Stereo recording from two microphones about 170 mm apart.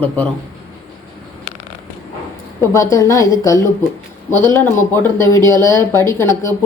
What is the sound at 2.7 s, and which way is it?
Speech, 20° left (ahead or behind).